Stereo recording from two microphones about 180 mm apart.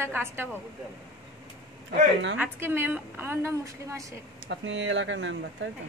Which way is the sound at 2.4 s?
10° right (ahead or behind).